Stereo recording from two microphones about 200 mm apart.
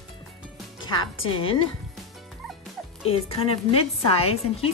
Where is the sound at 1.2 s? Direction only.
25° left (ahead or behind).